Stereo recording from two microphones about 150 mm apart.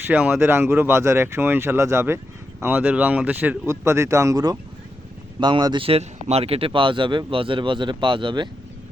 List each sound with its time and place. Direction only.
0.1 s speech: 10° right (ahead or behind); by 8.4 s 35° right (ahead or behind)